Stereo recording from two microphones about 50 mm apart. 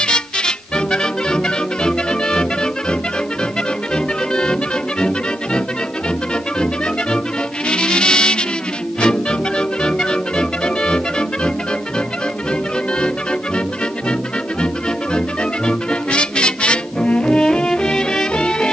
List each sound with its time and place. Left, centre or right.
0.0 s music: centre
7.7 s music: centre
15.1 s music: centre